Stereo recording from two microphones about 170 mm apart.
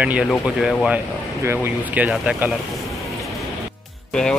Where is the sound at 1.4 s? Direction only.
15° right (ahead or behind).